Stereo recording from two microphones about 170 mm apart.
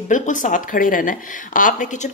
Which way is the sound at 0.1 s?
50° left (ahead or behind).